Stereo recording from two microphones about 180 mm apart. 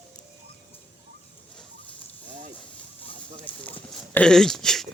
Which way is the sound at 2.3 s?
45° right (ahead or behind).